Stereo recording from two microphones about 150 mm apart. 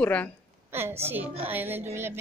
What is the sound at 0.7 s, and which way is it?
A woman's voice, 15° right (ahead or behind).